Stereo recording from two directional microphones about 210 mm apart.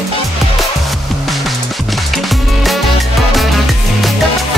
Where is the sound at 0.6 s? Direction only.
Centre (ahead or behind).